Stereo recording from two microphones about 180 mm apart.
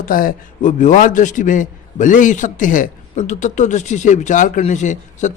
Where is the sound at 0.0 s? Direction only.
50° left (ahead or behind).